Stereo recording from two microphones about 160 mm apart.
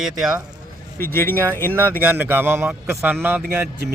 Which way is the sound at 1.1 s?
15° left (ahead or behind).